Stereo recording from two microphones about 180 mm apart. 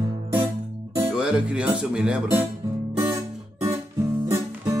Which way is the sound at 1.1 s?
5° right (ahead or behind).